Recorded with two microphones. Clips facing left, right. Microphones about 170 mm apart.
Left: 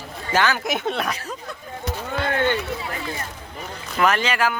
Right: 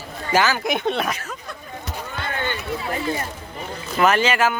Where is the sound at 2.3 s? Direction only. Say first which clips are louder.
Left 6 dB; 80° left.